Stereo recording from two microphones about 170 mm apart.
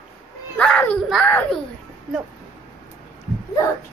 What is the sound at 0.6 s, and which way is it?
Children playing, 5° left (ahead or behind).